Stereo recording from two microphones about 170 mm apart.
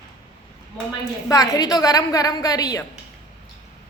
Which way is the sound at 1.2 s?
20° left (ahead or behind).